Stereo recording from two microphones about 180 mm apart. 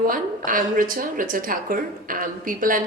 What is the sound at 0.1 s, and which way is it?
A woman's voice, 50° right (ahead or behind).